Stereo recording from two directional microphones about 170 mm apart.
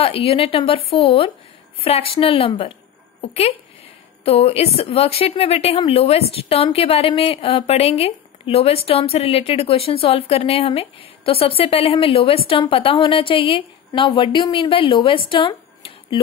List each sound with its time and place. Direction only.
0.0 s a woman's voice: 35° left (ahead or behind)